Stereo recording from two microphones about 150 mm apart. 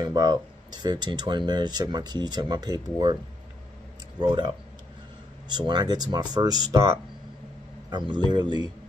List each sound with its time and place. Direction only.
0.0 s speech: 30° right (ahead or behind)
4.2 s speech: 30° right (ahead or behind)